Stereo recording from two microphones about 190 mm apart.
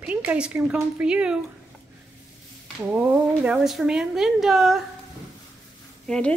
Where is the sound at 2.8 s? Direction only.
5° right (ahead or behind).